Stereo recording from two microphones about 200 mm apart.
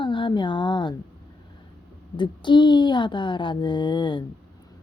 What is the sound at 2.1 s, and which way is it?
A woman's voice, 25° left (ahead or behind).